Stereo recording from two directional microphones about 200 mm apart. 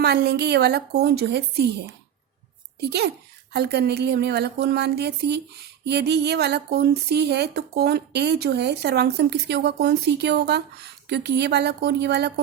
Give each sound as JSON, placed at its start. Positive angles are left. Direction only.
{"t": 0.0, "sound": "speech", "side_deg": -55}
{"t": 2.8, "sound": "speech", "side_deg": -55}